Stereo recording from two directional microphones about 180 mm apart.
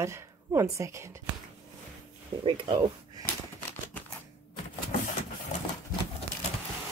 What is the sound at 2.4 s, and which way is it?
Speech, 25° right (ahead or behind).